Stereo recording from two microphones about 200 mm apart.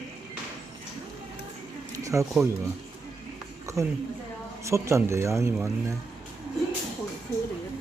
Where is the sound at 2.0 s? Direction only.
15° right (ahead or behind).